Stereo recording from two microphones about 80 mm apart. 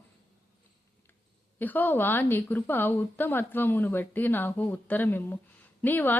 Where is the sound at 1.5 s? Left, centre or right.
Left.